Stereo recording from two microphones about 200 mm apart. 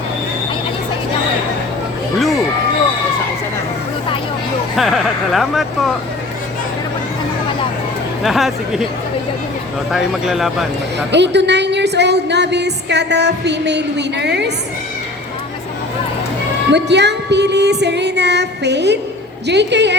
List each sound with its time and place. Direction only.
2.1 s a sound: centre (ahead or behind)
4.8 s speech: centre (ahead or behind)
8.2 s speech: centre (ahead or behind)
9.9 s speech: centre (ahead or behind)
11.1 s a woman's voice: 60° right (ahead or behind)
16.7 s a woman's voice: 60° right (ahead or behind)